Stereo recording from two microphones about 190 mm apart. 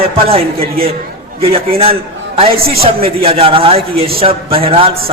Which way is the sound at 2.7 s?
50° right (ahead or behind).